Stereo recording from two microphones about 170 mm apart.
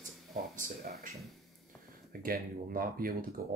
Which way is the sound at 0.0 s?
45° right (ahead or behind).